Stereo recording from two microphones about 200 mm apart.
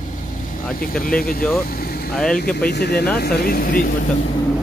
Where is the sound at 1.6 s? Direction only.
50° left (ahead or behind).